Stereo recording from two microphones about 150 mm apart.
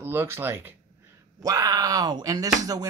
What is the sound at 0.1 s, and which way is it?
Speech, 15° right (ahead or behind).